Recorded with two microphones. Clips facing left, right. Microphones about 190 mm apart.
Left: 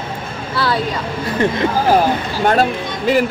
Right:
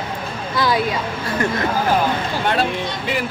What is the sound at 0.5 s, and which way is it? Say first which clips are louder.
Speech: even; 15° right (ahead or behind).